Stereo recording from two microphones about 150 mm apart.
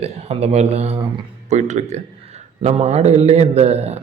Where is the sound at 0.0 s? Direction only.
45° right (ahead or behind).